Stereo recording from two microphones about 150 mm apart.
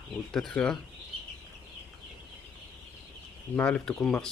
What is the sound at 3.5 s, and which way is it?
Speech, 10° left (ahead or behind).